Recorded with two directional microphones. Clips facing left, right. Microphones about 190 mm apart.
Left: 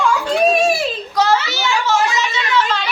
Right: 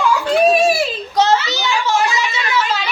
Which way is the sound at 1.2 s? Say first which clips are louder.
Right 2 dB; 20° right (ahead or behind).